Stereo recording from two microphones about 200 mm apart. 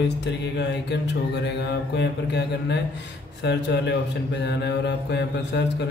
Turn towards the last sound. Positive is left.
turn(degrees=60)  # may be behind; listen again after turning